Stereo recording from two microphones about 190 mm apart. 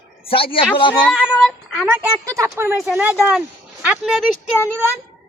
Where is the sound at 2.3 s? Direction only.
15° right (ahead or behind).